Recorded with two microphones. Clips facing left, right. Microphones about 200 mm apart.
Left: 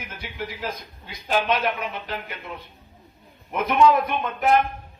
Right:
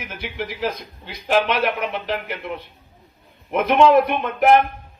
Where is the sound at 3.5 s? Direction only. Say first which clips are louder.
Right 4 dB; 65° right (ahead or behind).